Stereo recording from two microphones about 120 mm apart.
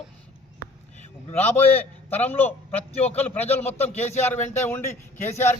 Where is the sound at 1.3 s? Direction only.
15° left (ahead or behind).